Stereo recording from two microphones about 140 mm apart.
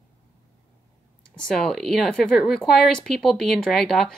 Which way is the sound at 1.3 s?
Centre (ahead or behind).